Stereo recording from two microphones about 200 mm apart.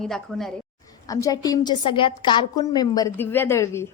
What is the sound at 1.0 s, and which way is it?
A woman's voice, 15° left (ahead or behind).